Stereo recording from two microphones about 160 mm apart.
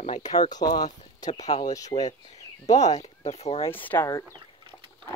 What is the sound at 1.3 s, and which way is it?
Speech, 45° left (ahead or behind).